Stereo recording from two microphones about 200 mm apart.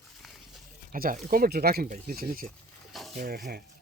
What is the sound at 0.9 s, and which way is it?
Speech, 45° right (ahead or behind).